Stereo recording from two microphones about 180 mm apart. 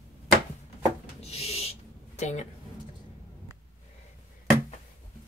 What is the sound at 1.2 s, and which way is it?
Owl, 35° left (ahead or behind).